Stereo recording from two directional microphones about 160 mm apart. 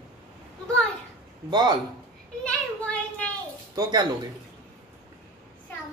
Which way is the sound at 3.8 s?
25° right (ahead or behind).